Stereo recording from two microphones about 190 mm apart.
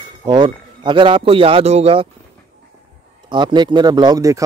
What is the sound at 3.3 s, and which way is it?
A man's voice, 25° right (ahead or behind).